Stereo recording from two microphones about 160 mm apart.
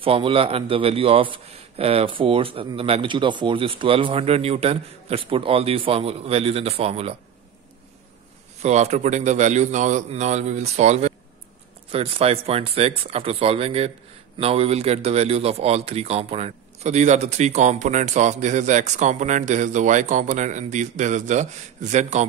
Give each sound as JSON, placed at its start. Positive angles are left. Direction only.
{"t": 0.0, "sound": "a man's voice", "side_deg": -35}
{"t": 8.6, "sound": "a man's voice", "side_deg": -45}